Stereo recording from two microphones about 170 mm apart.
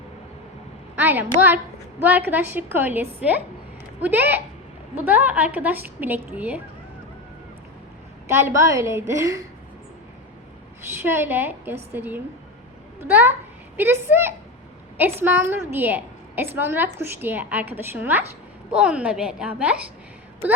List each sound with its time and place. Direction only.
0.9 s a woman's voice: 10° right (ahead or behind)
8.3 s a woman's voice: 15° right (ahead or behind)
10.9 s a woman's voice: 15° right (ahead or behind)